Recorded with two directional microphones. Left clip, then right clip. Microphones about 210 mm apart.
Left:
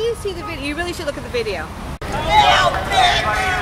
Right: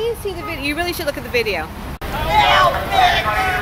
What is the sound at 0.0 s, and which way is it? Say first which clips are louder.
Speech: even; centre (ahead or behind).